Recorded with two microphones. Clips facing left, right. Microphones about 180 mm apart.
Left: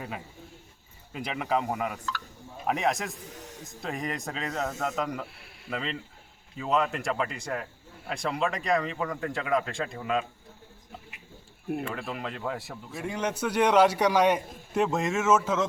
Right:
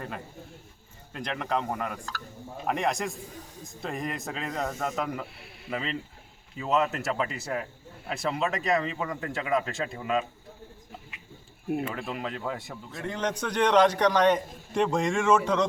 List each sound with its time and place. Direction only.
1.1 s a man's voice: 5° left (ahead or behind)
3.3 s a sound: 75° left (ahead or behind)
3.6 s a man's voice: centre (ahead or behind)
11.7 s a man's voice: centre (ahead or behind)